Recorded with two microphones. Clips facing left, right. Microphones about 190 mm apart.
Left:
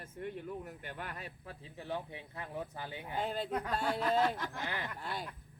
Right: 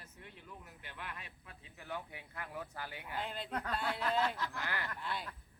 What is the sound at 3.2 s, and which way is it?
Speech, 40° left (ahead or behind).